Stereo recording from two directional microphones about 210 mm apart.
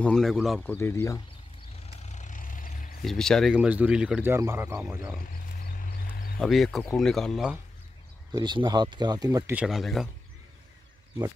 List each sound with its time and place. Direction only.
0.0 s speech: centre (ahead or behind)
0.7 s speech: 10° left (ahead or behind)
2.0 s vehicle: 35° left (ahead or behind)
3.0 s speech: centre (ahead or behind)
5.2 s wild animals: 45° left (ahead or behind)
6.4 s speech: centre (ahead or behind)
8.3 s speech: 20° right (ahead or behind)
9.6 s speech: centre (ahead or behind)